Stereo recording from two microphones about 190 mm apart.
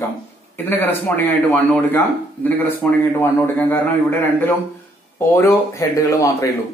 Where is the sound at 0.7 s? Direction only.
10° left (ahead or behind).